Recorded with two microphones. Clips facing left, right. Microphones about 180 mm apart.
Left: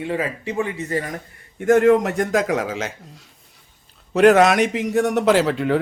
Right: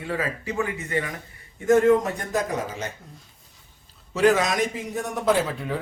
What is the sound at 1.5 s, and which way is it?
A man's voice, 65° left (ahead or behind).